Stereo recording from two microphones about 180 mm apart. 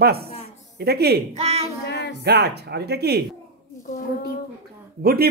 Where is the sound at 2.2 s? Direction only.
65° right (ahead or behind).